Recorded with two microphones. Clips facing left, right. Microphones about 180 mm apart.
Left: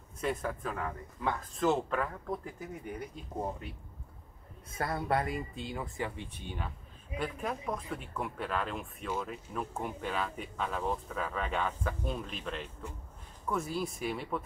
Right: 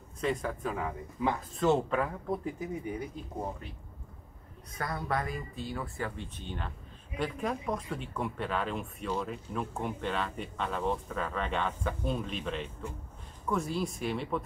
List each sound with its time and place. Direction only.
0.2 s speech: 5° left (ahead or behind)
4.7 s speech: 25° left (ahead or behind); by 14.4 s 5° left (ahead or behind)